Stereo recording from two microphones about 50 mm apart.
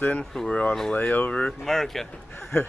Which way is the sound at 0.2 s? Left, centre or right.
Centre.